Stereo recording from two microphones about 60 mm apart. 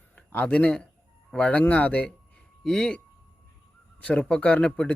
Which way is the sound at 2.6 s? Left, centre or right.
Centre.